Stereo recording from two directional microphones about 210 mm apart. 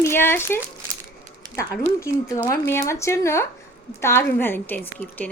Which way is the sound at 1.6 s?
15° left (ahead or behind).